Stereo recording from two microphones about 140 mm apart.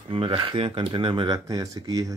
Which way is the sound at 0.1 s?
40° right (ahead or behind).